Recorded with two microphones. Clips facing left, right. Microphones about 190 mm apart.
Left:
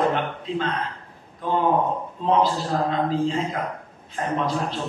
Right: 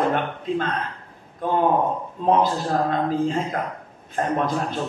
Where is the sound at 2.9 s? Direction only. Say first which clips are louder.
Right 1 dB; 50° right (ahead or behind).